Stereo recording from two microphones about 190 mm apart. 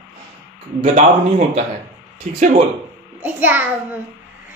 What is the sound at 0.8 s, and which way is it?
A man's voice, 45° right (ahead or behind).